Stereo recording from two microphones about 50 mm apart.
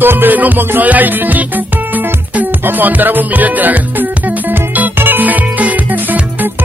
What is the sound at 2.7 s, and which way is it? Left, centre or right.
Music, right.